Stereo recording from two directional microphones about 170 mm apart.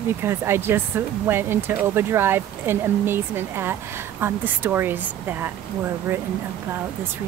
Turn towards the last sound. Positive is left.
turn(degrees=-10)  # may be behind; listen again after turning